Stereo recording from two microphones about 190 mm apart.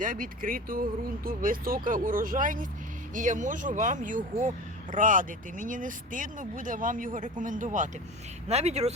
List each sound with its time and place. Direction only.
0.0 s speech: 45° right (ahead or behind)